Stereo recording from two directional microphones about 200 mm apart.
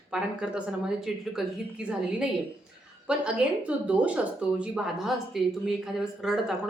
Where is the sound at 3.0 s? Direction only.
5° right (ahead or behind).